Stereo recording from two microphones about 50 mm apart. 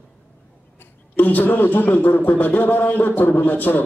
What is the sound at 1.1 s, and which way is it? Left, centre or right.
A man's voice, left.